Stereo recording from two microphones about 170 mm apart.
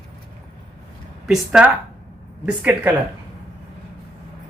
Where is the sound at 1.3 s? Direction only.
5° right (ahead or behind).